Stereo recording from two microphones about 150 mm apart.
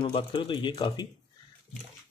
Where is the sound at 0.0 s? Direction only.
35° left (ahead or behind).